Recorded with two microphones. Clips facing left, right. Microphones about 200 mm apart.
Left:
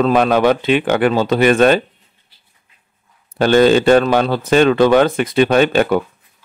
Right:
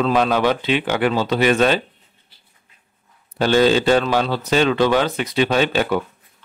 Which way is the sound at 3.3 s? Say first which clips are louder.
Left 4 dB; 55° left (ahead or behind).